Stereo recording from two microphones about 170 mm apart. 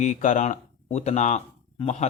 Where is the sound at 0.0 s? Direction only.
50° left (ahead or behind).